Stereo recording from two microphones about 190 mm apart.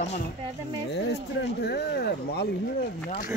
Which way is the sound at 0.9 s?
60° left (ahead or behind).